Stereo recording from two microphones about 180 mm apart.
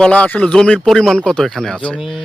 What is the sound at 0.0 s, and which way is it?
Speech, 5° left (ahead or behind).